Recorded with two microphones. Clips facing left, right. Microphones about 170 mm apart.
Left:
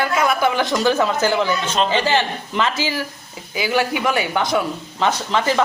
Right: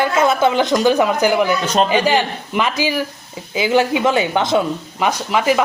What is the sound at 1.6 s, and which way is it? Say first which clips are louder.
Speech: right 4 dB; 40° right (ahead or behind).